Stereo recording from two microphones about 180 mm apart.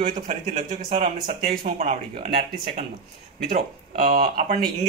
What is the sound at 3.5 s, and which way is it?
A man's voice, 50° right (ahead or behind).